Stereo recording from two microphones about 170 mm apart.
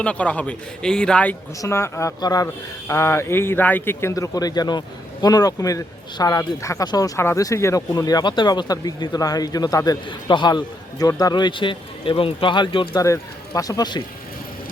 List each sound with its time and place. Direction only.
0.0 s speech: 5° left (ahead or behind); by 14.0 s 25° left (ahead or behind)